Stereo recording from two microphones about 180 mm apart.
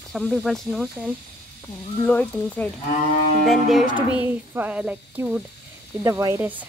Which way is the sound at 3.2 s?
55° left (ahead or behind).